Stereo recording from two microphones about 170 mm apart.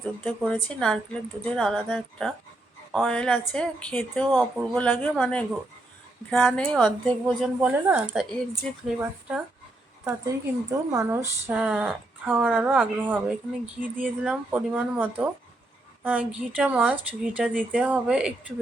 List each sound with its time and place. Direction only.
0.3 s a woman's voice: 5° left (ahead or behind)
7.6 s speech: 10° right (ahead or behind)
10.0 s speech: 20° right (ahead or behind)